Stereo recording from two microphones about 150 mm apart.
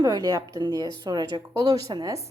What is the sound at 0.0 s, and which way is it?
A woman's voice, 25° right (ahead or behind).